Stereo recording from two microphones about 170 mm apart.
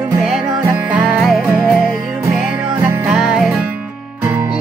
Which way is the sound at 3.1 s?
5° right (ahead or behind).